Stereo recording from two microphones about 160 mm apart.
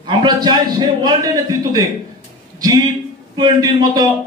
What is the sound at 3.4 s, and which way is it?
Speech, 25° right (ahead or behind).